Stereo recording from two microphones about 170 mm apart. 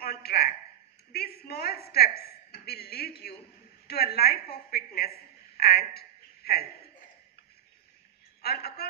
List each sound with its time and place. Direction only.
0.0 s a woman's voice: 65° left (ahead or behind)
5.6 s a sound: 65° left (ahead or behind)
8.4 s a man's voice: 70° left (ahead or behind)